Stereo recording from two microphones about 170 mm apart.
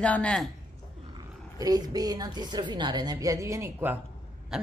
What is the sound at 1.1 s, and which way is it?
A woman's voice, 20° right (ahead or behind).